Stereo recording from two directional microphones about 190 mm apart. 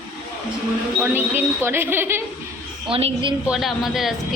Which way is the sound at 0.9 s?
10° right (ahead or behind).